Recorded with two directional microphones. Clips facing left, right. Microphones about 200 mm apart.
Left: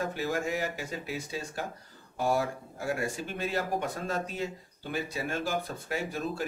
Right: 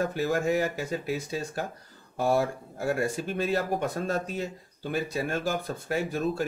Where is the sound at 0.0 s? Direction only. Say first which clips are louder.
Right 5 dB; 50° right (ahead or behind).